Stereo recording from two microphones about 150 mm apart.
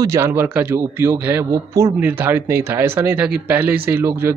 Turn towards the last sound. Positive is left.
turn(degrees=-15)  # may be behind; listen again after turning